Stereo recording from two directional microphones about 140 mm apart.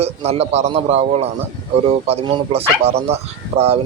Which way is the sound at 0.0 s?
50° right (ahead or behind).